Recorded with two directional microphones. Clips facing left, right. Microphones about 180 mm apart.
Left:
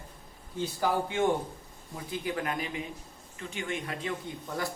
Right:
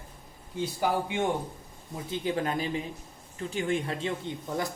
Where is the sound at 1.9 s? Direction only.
25° right (ahead or behind).